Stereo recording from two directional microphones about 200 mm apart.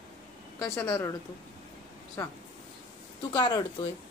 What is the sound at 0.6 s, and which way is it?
Speech, 15° left (ahead or behind).